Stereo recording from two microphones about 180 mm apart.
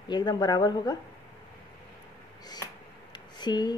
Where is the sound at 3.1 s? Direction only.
25° left (ahead or behind).